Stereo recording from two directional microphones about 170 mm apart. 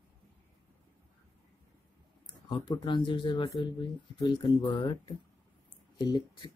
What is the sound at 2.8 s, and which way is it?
Speech, 30° left (ahead or behind).